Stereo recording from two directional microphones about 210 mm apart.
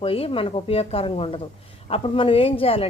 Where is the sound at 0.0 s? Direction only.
25° left (ahead or behind).